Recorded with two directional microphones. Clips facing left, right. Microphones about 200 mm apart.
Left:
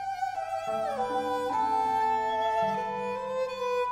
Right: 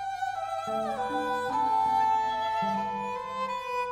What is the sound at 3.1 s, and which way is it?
Music, 45° left (ahead or behind).